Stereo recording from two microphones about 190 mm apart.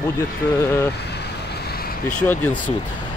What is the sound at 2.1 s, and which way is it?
Speech, 10° left (ahead or behind).